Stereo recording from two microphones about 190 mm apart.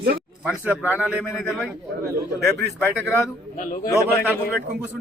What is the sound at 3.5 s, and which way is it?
Speech, 45° left (ahead or behind).